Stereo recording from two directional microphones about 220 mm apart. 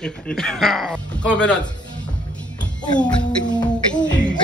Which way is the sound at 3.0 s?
5° left (ahead or behind).